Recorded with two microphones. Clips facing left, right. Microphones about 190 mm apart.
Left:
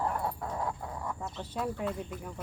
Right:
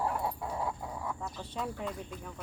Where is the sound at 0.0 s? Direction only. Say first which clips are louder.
Even; 5° right (ahead or behind).